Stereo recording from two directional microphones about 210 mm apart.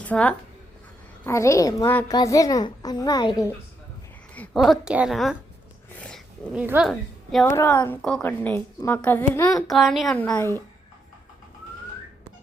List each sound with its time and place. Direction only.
0.0 s a woman's voice: 5° left (ahead or behind)
4.4 s a woman's voice: centre (ahead or behind)
7.4 s a woman's voice: 15° left (ahead or behind)
9.6 s a woman's voice: centre (ahead or behind)